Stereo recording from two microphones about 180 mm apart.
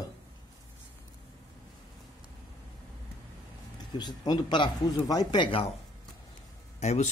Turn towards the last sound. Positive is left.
turn(degrees=40)  # may be behind; listen again after turning